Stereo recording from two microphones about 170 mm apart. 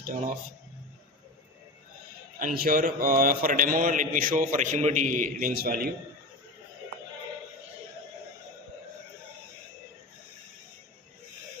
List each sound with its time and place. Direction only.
0.0 s a man's voice: 55° right (ahead or behind)
2.4 s a man's voice: 55° right (ahead or behind)